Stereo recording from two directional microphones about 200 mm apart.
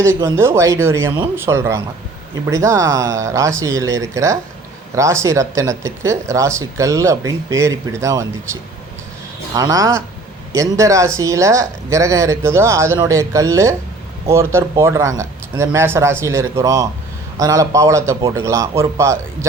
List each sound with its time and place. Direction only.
0.0 s speech: 15° right (ahead or behind)
9.6 s speech: 15° right (ahead or behind)